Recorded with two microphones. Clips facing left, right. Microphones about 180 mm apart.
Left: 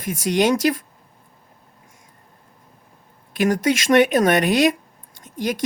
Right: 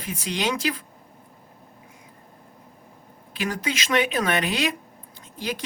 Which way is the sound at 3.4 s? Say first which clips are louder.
Left 9 dB; 45° left (ahead or behind).